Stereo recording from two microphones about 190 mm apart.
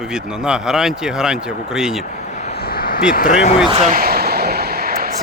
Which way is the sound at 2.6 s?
55° left (ahead or behind).